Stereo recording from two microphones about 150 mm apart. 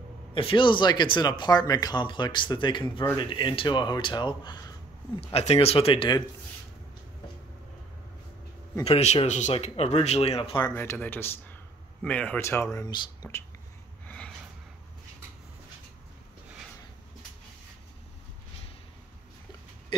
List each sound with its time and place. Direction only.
0.3 s speech: 35° left (ahead or behind)
8.8 s speech: 45° left (ahead or behind)
10.7 s speech: 15° left (ahead or behind)
14.0 s a sound: 5° left (ahead or behind)